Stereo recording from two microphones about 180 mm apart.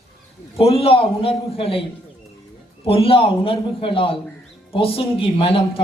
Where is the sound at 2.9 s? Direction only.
30° left (ahead or behind).